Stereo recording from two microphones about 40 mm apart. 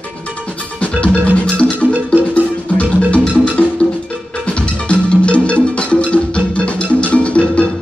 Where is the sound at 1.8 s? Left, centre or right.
Right.